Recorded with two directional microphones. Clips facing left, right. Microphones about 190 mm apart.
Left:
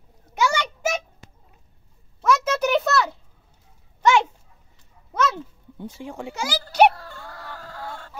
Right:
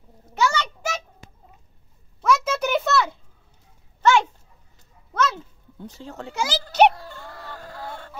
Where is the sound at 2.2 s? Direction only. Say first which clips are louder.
Left 1 dB; centre (ahead or behind).